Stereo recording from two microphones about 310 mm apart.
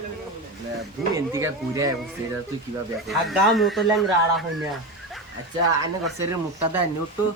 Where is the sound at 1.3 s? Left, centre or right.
Centre.